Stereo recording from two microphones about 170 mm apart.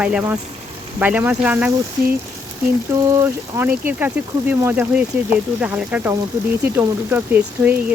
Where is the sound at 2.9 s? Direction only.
15° right (ahead or behind).